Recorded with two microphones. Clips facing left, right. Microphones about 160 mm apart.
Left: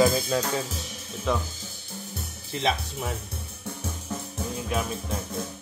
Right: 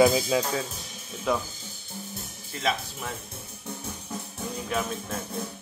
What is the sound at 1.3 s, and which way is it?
Speech, 5° right (ahead or behind).